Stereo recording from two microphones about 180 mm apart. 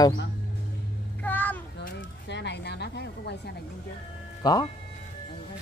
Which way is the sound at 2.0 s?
75° left (ahead or behind).